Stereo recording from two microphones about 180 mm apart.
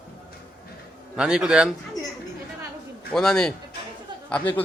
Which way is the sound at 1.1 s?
5° right (ahead or behind).